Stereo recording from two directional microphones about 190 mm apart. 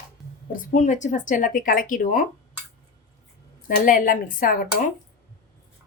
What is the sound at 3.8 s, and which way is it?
Speech, 45° left (ahead or behind).